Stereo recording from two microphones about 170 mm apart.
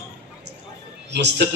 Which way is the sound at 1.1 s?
90° right.